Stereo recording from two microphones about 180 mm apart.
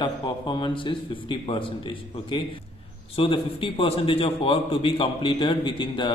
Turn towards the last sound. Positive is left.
turn(degrees=25)  # may be behind; listen again after turning